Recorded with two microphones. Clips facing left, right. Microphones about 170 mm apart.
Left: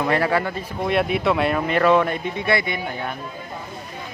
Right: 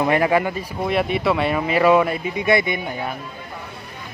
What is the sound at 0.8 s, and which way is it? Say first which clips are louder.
Speech: even; centre (ahead or behind).